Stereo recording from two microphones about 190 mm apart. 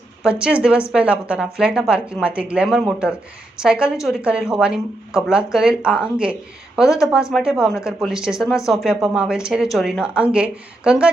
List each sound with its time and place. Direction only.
0.2 s a woman's voice: 5° right (ahead or behind)